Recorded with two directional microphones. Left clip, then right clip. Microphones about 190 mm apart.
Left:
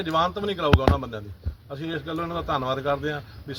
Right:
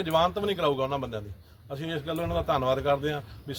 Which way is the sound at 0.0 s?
15° right (ahead or behind).